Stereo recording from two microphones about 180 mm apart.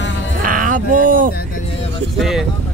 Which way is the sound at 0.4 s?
50° right (ahead or behind).